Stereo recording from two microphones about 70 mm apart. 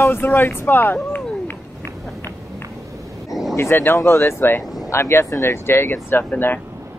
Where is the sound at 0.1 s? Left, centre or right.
Left.